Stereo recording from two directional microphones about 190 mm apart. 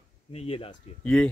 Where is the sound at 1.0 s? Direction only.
5° left (ahead or behind).